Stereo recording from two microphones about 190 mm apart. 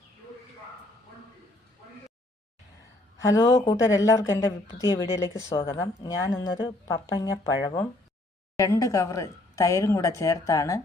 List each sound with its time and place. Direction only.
3.2 s a woman's voice: 15° left (ahead or behind)